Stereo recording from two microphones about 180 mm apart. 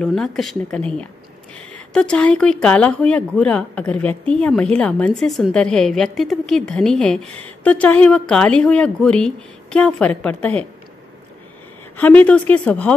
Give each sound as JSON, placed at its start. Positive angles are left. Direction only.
{"t": 0.0, "sound": "a woman's voice", "side_deg": 0}
{"t": 12.0, "sound": "a woman's voice", "side_deg": 10}